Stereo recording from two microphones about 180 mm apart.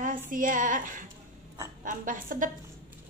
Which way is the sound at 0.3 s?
50° right (ahead or behind).